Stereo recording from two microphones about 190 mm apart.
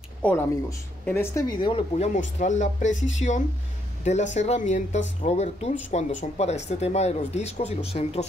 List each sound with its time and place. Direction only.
0.2 s speech: 10° left (ahead or behind)
1.6 s speech: 30° left (ahead or behind)
2.1 s speech: 40° left (ahead or behind)